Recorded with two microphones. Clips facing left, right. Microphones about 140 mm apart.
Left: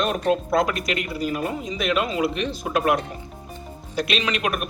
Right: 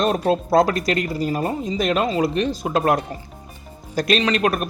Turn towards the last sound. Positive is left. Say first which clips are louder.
# right 5 dB
turn(degrees=-35)  # may be behind; listen again after turning